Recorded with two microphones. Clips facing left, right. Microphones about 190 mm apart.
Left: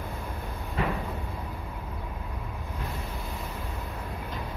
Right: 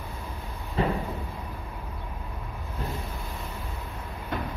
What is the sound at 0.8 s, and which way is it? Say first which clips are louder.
Cupboard open or close: right 3 dB; 30° right (ahead or behind).